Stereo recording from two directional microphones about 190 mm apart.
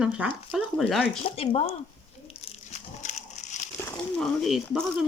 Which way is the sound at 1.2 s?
30° left (ahead or behind).